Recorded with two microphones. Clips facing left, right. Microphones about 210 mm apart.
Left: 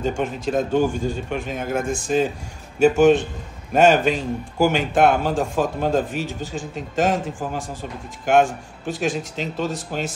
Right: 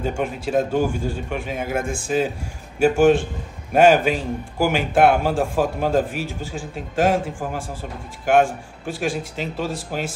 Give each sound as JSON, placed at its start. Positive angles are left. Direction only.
{"t": 0.0, "sound": "a man's voice", "side_deg": -10}